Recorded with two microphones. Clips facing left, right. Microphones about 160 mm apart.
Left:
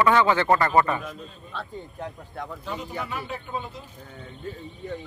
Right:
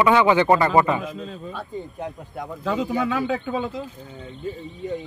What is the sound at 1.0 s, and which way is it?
Speech, 90° right.